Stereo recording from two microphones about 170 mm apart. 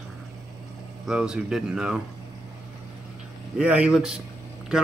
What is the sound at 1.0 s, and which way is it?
Speech, 5° right (ahead or behind).